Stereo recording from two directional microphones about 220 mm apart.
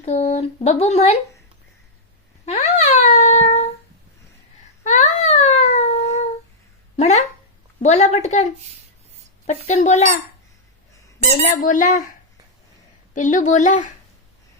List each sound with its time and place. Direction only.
0.0 s speech: 30° left (ahead or behind)
2.5 s a sound: 30° left (ahead or behind)
4.8 s a sound: 35° left (ahead or behind)
7.8 s a woman's voice: 30° left (ahead or behind)
11.6 s a woman's voice: 35° left (ahead or behind)
13.1 s a woman's voice: 35° left (ahead or behind)